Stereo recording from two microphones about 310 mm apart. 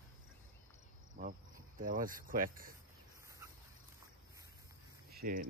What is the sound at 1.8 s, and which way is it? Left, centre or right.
Speech, right.